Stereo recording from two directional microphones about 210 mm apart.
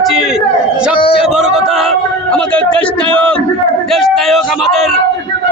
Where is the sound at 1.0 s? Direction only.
25° left (ahead or behind).